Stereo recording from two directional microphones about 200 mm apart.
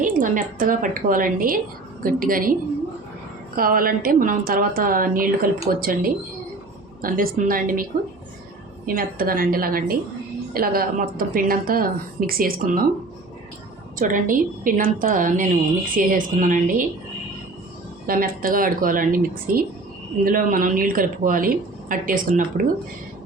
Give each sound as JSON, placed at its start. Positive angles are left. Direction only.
{"t": 0.0, "sound": "speech", "side_deg": -40}
{"t": 3.5, "sound": "speech", "side_deg": -45}
{"t": 9.0, "sound": "speech", "side_deg": -45}
{"t": 14.0, "sound": "a woman's voice", "side_deg": -45}
{"t": 18.0, "sound": "speech", "side_deg": -45}